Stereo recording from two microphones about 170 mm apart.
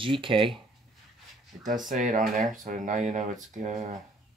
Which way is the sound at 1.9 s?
50° right (ahead or behind).